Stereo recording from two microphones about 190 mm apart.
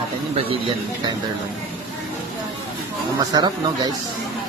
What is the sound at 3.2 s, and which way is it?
Speech, 20° right (ahead or behind).